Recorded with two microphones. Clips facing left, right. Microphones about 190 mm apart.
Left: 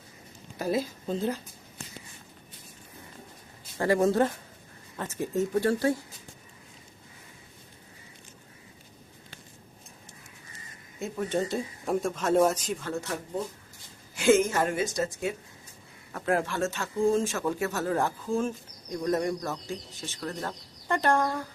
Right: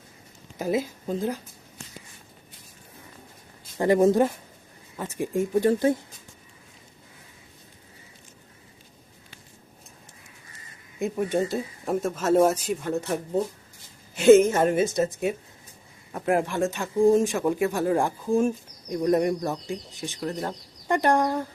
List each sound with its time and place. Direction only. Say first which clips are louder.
0.6 s speech: right 2 dB; 15° right (ahead or behind)
3.8 s speech: right 4 dB; 20° right (ahead or behind)
11.0 s speech: right 4 dB; 15° right (ahead or behind)
12.8 s a woman's voice: right 6 dB; 20° right (ahead or behind)